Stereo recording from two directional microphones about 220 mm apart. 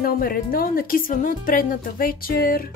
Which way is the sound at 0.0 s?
40° left (ahead or behind).